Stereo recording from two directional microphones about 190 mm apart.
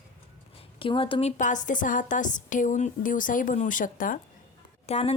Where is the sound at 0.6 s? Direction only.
30° left (ahead or behind); by 4.2 s 45° left (ahead or behind).